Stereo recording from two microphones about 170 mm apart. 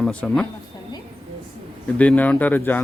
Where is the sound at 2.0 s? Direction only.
10° left (ahead or behind).